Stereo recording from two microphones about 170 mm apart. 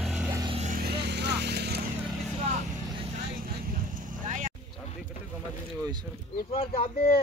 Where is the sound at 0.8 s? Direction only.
75° right (ahead or behind).